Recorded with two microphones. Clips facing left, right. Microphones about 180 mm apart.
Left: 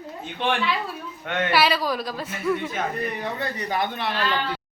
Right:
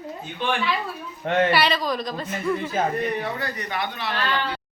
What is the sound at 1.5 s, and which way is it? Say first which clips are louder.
A woman's voice: left 1 dB; 5° left (ahead or behind).